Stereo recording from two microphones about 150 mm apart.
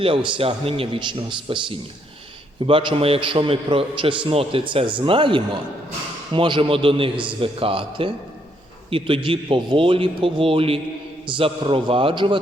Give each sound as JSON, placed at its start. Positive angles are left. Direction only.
{"t": 0.0, "sound": "a man's voice", "side_deg": -35}
{"t": 2.6, "sound": "a man's voice", "side_deg": -35}